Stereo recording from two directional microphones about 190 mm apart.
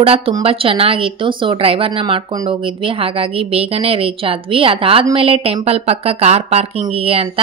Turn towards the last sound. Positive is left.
turn(degrees=-30)  # may be behind; listen again after turning